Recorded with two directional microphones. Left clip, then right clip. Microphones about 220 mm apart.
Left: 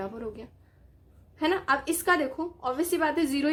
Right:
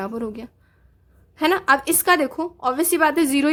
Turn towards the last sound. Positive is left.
turn(degrees=-40)  # may be behind; listen again after turning